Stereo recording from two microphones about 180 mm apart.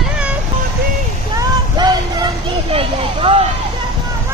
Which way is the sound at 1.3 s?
20° right (ahead or behind).